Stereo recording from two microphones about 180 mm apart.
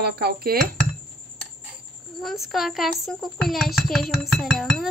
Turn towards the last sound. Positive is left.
turn(degrees=0)  # may be behind; listen again after turning